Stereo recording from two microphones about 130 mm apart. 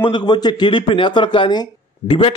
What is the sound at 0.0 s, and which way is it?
A man's voice, 35° left (ahead or behind).